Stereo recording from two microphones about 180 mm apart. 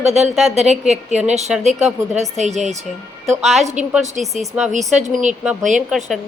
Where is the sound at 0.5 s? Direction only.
40° right (ahead or behind).